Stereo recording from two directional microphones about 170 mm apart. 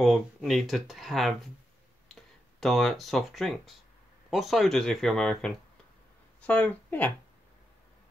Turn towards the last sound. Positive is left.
turn(degrees=10)  # may be behind; listen again after turning